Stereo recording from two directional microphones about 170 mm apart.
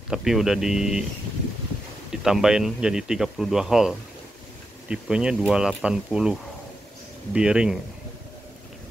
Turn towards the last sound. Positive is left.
turn(degrees=-5)  # may be behind; listen again after turning